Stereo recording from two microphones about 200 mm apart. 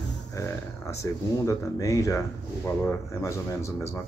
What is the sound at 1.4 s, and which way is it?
Speech, 15° left (ahead or behind).